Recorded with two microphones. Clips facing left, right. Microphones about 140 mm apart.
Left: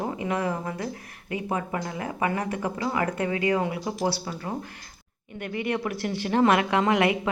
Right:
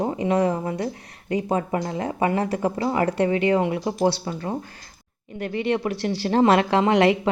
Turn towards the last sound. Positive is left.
turn(degrees=-30)  # may be behind; listen again after turning